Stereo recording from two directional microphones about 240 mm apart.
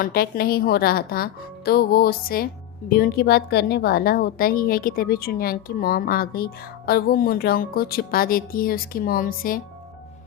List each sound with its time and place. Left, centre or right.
0.0 s a woman's voice: left